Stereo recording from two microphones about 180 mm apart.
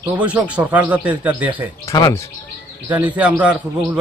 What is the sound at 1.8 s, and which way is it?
Speech, 20° left (ahead or behind).